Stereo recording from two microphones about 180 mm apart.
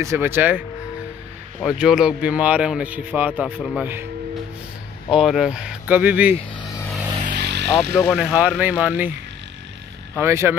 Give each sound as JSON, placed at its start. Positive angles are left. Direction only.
{"t": 0.0, "sound": "speech", "side_deg": -15}
{"t": 5.1, "sound": "speech", "side_deg": 0}
{"t": 6.3, "sound": "speech", "side_deg": 25}
{"t": 7.3, "sound": "vehicle", "side_deg": -70}
{"t": 8.1, "sound": "speech", "side_deg": -5}
{"t": 10.1, "sound": "speech", "side_deg": -15}